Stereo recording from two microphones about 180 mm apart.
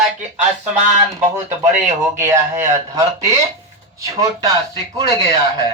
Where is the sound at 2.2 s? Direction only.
15° right (ahead or behind).